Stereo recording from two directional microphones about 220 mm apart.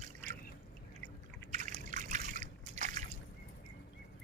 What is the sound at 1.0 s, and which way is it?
Trickle, 35° right (ahead or behind).